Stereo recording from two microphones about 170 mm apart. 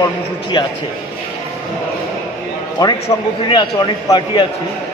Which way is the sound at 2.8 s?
20° left (ahead or behind).